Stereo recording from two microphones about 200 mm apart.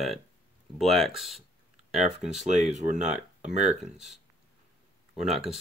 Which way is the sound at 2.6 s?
35° right (ahead or behind).